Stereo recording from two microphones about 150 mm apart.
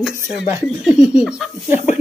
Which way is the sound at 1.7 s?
50° left (ahead or behind).